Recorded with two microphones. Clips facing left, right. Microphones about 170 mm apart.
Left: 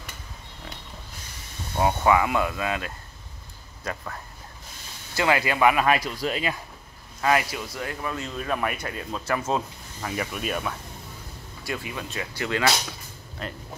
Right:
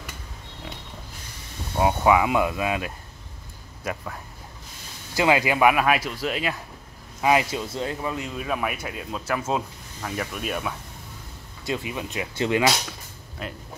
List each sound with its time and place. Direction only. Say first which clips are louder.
1.8 s speech: right 1 dB; 10° right (ahead or behind)
7.2 s speech: right 2 dB; 15° right (ahead or behind)
8.4 s speech: left 3 dB; 5° right (ahead or behind)
11.6 s speech: right 4 dB; 20° right (ahead or behind)
13.4 s speech: even; 5° right (ahead or behind)